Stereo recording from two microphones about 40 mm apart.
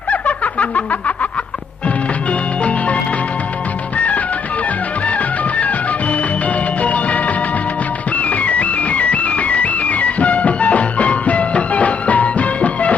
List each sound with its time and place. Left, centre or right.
0.1 s snicker: left
2.6 s music: left